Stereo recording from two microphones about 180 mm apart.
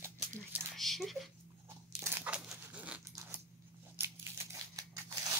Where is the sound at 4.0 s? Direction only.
15° right (ahead or behind).